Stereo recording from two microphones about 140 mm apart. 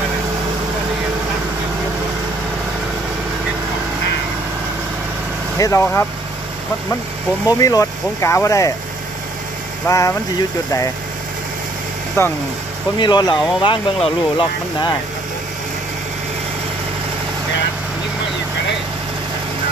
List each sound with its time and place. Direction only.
5.6 s speech: 20° left (ahead or behind)
7.4 s speech: 25° left (ahead or behind)
9.8 s speech: 20° left (ahead or behind)
12.2 s speech: 20° left (ahead or behind)
13.0 s speech: 30° left (ahead or behind)